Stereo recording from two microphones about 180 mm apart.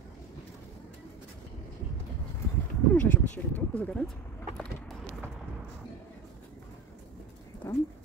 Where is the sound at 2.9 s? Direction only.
10° left (ahead or behind).